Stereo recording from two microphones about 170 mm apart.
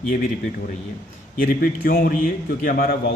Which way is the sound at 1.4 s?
55° left (ahead or behind).